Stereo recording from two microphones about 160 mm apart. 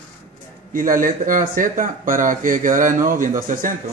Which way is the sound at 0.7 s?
60° right (ahead or behind).